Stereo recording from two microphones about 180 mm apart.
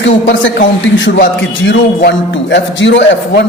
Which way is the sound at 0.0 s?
90° left.